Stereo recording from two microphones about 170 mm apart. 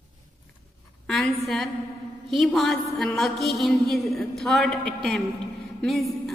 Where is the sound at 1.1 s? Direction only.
Centre (ahead or behind).